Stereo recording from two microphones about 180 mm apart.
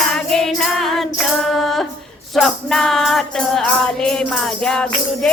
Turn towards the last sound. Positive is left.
turn(degrees=5)  # may be behind; listen again after turning